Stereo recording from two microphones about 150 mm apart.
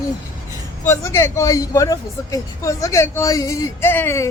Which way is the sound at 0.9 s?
20° left (ahead or behind).